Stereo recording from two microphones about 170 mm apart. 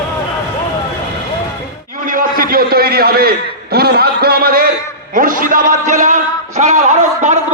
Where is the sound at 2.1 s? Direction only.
55° right (ahead or behind).